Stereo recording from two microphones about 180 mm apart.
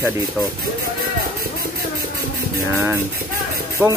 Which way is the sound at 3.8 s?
10° right (ahead or behind).